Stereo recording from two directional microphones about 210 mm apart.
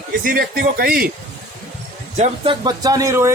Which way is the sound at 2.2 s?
20° right (ahead or behind).